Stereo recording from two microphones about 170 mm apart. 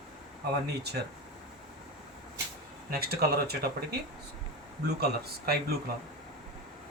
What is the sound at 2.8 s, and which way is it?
Speech, 65° right (ahead or behind).